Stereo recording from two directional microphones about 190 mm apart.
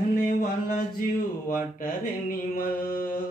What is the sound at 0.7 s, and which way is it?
Mantra, 45° left (ahead or behind).